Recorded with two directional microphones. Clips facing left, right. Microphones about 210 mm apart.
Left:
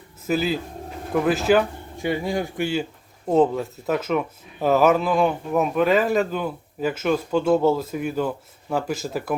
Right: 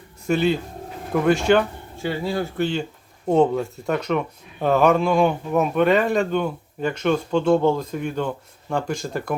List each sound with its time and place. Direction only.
0.3 s speech: centre (ahead or behind)
2.0 s speech: 15° left (ahead or behind)